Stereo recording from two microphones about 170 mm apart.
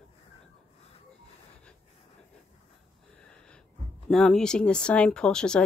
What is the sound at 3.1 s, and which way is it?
Wheeze, 5° left (ahead or behind).